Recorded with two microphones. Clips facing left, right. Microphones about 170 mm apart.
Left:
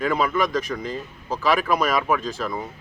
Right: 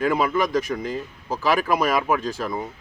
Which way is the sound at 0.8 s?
10° right (ahead or behind).